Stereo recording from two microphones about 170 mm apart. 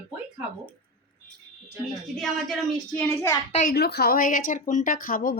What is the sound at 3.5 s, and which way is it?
Speech, 45° left (ahead or behind).